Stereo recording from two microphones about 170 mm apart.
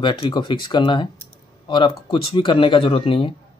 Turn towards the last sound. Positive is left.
turn(degrees=35)  # may be behind; listen again after turning